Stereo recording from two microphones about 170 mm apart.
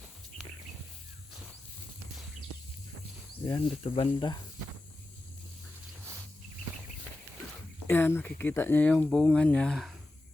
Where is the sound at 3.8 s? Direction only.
30° left (ahead or behind).